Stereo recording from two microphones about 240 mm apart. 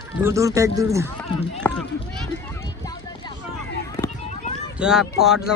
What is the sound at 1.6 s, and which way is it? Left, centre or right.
Run, centre.